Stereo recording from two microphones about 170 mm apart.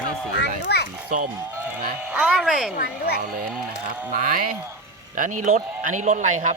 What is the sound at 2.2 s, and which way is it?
Speech, centre (ahead or behind).